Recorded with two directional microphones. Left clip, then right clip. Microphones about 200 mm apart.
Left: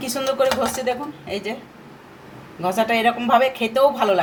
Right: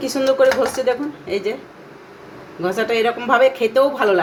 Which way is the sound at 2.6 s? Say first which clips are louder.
Right 1 dB; 5° left (ahead or behind).